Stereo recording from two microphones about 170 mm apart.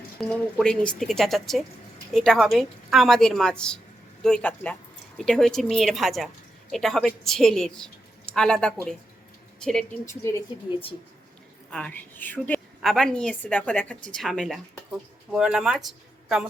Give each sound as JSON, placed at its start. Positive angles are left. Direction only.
{"t": 0.2, "sound": "speech", "side_deg": 5}
{"t": 10.1, "sound": "a woman's voice", "side_deg": 15}
{"t": 11.7, "sound": "a woman's voice", "side_deg": 5}